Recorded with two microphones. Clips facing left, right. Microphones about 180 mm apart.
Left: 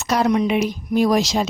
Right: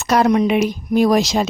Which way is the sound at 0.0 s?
55° right (ahead or behind).